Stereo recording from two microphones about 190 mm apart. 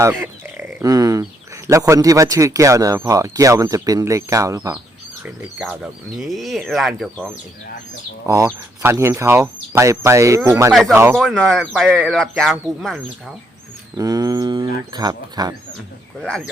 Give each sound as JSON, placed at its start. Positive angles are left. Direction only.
{"t": 0.4, "sound": "a sound", "side_deg": -15}
{"t": 1.6, "sound": "speech", "side_deg": -15}
{"t": 5.2, "sound": "speech", "side_deg": -5}
{"t": 8.3, "sound": "speech", "side_deg": -15}
{"t": 10.7, "sound": "speech", "side_deg": 0}
{"t": 10.9, "sound": "speech", "side_deg": -10}
{"t": 11.2, "sound": "speech", "side_deg": 0}
{"t": 13.9, "sound": "speech", "side_deg": -20}